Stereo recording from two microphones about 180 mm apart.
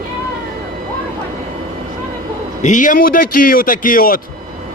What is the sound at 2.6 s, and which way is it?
A man's voice, 45° left (ahead or behind).